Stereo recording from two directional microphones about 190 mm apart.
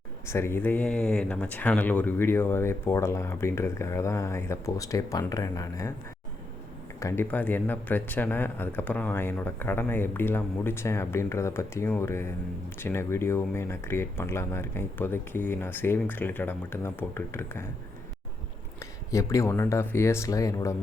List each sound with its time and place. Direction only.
0.3 s speech: 15° left (ahead or behind)
7.0 s speech: 15° left (ahead or behind)
18.8 s speech: 15° left (ahead or behind)